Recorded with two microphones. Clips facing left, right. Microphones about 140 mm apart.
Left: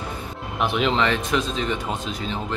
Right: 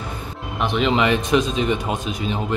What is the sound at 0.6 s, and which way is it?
Speech, centre (ahead or behind).